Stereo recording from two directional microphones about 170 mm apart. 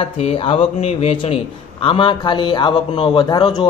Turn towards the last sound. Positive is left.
turn(degrees=25)  # may be behind; listen again after turning